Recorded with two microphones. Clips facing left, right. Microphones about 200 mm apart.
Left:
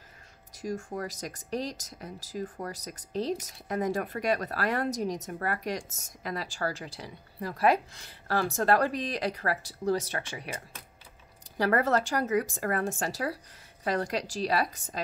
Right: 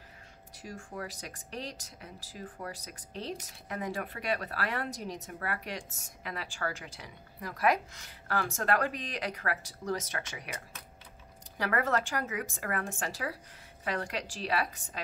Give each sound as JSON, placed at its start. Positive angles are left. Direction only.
{"t": 0.6, "sound": "speech", "side_deg": 40}